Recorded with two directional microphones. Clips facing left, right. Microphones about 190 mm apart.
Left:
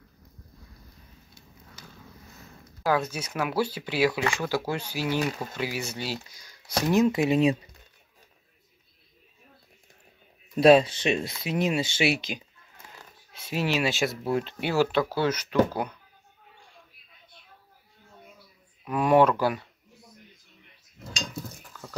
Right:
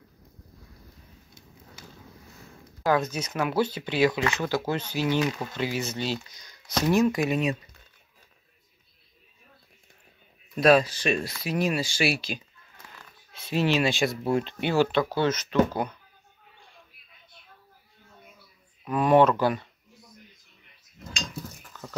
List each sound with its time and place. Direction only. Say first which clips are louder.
2.9 s speech: right 1 dB; 10° left (ahead or behind)
7.0 s speech: left 5 dB; 25° left (ahead or behind)
10.6 s speech: left 2 dB; 25° left (ahead or behind)
13.3 s speech: right 3 dB; 10° left (ahead or behind)
18.9 s speech: right 1 dB; 10° left (ahead or behind)
21.7 s a sound: right 2 dB; 5° left (ahead or behind)